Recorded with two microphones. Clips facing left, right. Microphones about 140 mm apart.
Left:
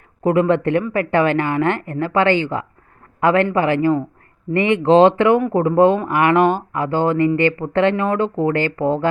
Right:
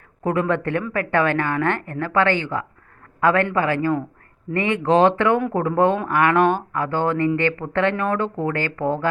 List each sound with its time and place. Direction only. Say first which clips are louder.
0.2 s a woman's voice: left 5 dB; 20° left (ahead or behind)